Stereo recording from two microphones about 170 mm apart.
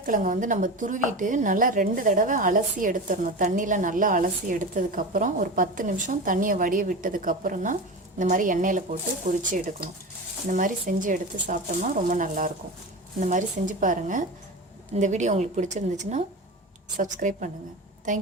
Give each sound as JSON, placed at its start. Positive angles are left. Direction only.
{"t": 0.0, "sound": "speech", "side_deg": -50}